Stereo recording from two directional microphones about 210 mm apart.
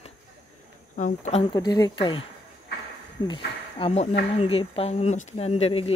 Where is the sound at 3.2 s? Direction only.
25° left (ahead or behind).